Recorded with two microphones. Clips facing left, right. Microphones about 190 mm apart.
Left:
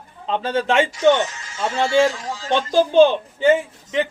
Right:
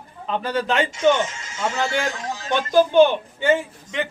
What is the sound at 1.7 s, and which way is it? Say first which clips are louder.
Speech: left 9 dB; 25° left (ahead or behind).